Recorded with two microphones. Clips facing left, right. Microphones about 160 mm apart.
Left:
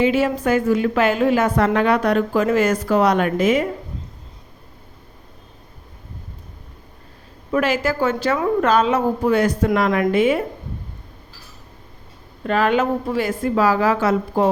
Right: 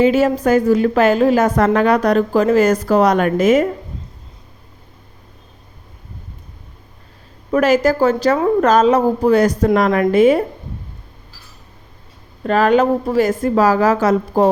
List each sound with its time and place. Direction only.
0.0 s a woman's voice: 40° right (ahead or behind)
7.5 s a woman's voice: 40° right (ahead or behind)
12.5 s a woman's voice: 40° right (ahead or behind)